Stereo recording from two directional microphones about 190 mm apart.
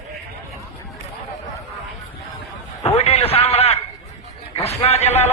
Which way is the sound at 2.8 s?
35° left (ahead or behind).